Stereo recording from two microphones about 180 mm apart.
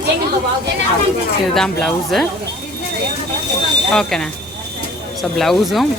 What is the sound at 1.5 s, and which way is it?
Speech, 5° left (ahead or behind).